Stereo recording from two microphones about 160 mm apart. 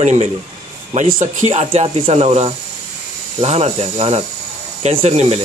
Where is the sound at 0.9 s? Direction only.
55° right (ahead or behind).